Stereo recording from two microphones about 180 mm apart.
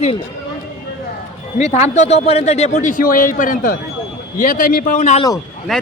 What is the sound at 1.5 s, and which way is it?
A man's voice, 40° left (ahead or behind).